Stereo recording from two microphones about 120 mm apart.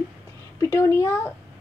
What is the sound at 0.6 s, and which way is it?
Speech, 25° left (ahead or behind).